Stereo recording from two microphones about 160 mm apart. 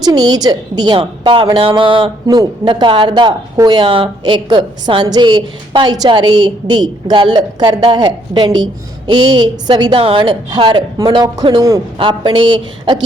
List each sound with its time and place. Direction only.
0.0 s a woman's voice: 25° right (ahead or behind)